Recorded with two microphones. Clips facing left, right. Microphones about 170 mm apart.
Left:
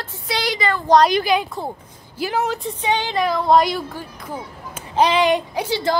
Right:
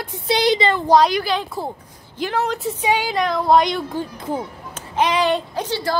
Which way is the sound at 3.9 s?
25° right (ahead or behind).